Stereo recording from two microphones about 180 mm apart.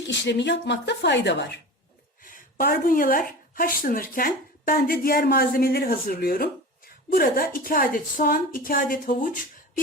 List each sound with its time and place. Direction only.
0.1 s speech: 75° left (ahead or behind)
2.2 s a woman's voice: 50° left (ahead or behind)